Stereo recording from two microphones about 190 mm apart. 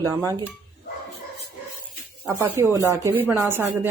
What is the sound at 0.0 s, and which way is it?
Speech, 20° right (ahead or behind).